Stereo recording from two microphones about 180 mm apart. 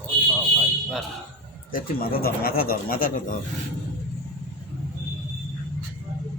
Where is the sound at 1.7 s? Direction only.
55° left (ahead or behind).